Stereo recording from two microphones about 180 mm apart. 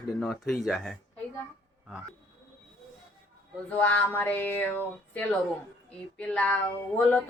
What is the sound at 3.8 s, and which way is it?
A woman's voice, 10° left (ahead or behind).